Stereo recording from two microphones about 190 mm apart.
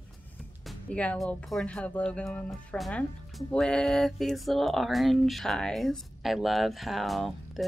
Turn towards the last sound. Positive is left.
turn(degrees=0)  # may be behind; listen again after turning